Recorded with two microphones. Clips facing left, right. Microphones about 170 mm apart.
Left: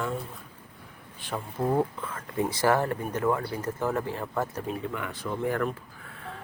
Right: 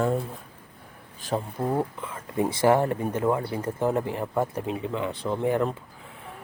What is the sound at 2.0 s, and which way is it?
Speech, 15° right (ahead or behind).